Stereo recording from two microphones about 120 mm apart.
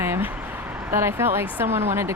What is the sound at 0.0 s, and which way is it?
Speech, 20° right (ahead or behind).